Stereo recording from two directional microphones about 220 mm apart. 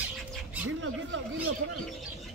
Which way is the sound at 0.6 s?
55° right (ahead or behind).